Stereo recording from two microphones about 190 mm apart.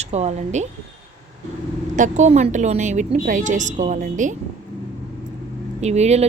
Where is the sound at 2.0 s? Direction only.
40° right (ahead or behind).